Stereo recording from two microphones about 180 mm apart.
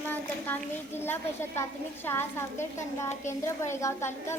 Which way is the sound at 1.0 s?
10° left (ahead or behind).